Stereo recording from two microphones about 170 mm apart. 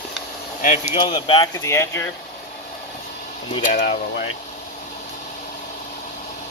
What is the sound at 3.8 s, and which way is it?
Speech, 90° left.